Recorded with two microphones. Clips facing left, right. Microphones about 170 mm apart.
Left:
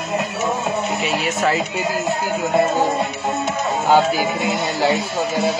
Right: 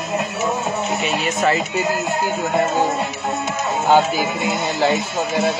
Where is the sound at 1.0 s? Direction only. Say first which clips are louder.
Right 2 dB; 5° left (ahead or behind).